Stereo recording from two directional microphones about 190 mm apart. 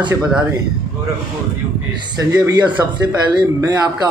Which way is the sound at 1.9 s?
20° right (ahead or behind).